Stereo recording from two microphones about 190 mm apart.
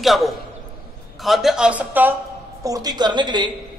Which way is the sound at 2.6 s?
20° right (ahead or behind).